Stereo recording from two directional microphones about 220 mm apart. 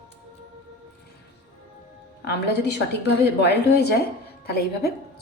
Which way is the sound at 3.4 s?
50° left (ahead or behind).